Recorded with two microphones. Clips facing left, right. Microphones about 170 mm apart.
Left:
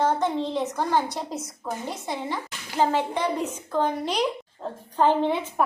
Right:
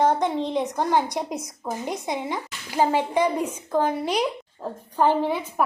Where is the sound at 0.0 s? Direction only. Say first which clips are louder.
Right 2 dB; 15° right (ahead or behind).